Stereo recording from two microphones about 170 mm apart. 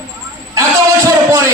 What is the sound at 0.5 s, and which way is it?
A man's voice, 20° right (ahead or behind).